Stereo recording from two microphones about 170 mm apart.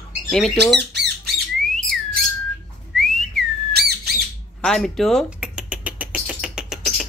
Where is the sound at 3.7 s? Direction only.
70° right (ahead or behind).